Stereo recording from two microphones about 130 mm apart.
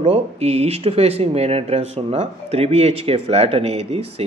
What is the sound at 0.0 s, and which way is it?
Speech, 55° right (ahead or behind).